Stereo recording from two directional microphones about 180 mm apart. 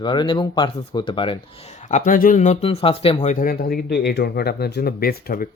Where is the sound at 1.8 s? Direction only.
45° left (ahead or behind).